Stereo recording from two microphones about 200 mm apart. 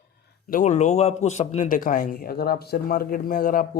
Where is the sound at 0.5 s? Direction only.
35° left (ahead or behind).